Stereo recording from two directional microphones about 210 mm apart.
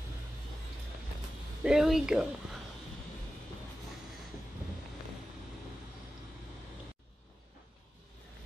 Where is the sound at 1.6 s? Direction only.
5° right (ahead or behind).